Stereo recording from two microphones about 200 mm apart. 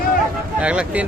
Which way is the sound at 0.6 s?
5° right (ahead or behind).